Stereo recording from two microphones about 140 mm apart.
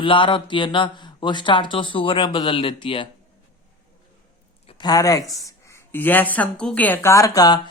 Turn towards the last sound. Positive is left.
turn(degrees=25)  # may be behind; listen again after turning